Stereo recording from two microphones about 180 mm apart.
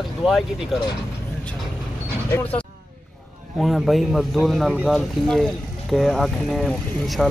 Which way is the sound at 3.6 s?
Centre (ahead or behind).